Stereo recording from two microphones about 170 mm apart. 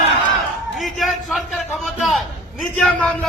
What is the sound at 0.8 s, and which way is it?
A man's voice, centre (ahead or behind).